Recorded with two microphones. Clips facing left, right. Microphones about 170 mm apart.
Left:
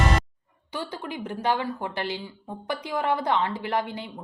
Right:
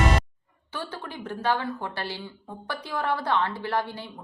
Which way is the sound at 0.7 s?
15° left (ahead or behind).